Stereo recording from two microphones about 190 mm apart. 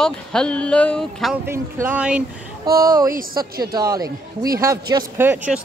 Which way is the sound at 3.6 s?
20° right (ahead or behind).